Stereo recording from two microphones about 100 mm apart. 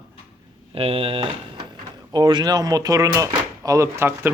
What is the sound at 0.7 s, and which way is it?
Speech, 70° right (ahead or behind).